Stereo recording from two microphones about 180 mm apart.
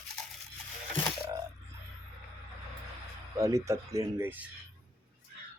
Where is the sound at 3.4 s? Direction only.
20° right (ahead or behind).